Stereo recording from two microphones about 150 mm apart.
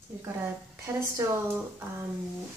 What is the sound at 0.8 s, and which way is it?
A woman's voice, 20° right (ahead or behind).